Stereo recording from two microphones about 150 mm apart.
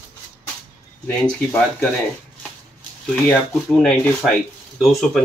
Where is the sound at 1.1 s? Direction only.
10° left (ahead or behind).